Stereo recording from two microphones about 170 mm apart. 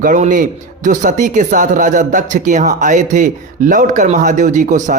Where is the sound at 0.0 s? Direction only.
50° right (ahead or behind).